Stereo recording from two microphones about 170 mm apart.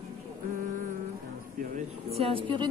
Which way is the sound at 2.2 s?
30° right (ahead or behind).